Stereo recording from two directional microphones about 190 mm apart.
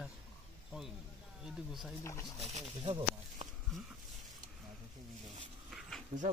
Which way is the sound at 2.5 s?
35° right (ahead or behind).